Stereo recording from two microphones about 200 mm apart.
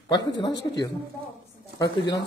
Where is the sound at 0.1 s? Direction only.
20° left (ahead or behind).